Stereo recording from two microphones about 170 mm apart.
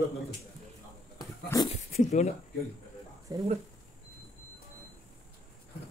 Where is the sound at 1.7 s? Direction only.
40° left (ahead or behind).